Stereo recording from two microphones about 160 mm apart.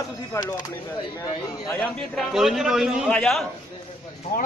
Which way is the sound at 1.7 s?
5° left (ahead or behind).